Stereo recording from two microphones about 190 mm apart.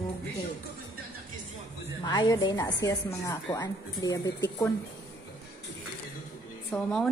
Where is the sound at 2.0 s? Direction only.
20° left (ahead or behind).